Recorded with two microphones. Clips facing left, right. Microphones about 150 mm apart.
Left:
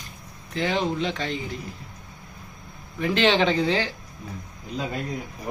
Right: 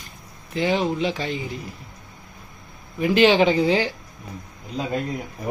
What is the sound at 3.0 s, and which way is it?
Speech, 10° right (ahead or behind).